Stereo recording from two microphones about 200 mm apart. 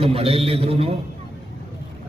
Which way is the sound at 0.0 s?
30° right (ahead or behind).